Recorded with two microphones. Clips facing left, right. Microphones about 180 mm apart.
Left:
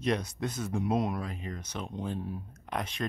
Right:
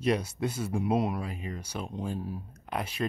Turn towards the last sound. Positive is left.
turn(degrees=-5)  # may be behind; listen again after turning